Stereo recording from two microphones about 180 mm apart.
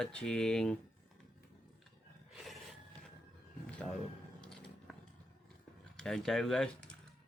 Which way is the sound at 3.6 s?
5° left (ahead or behind).